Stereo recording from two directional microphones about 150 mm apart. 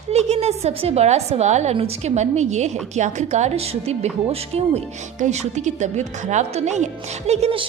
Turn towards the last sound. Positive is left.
turn(degrees=-40)  # may be behind; listen again after turning